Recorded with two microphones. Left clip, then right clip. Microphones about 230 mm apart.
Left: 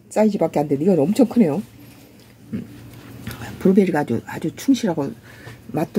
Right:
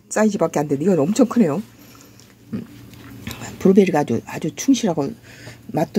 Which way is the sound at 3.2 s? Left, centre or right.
Centre.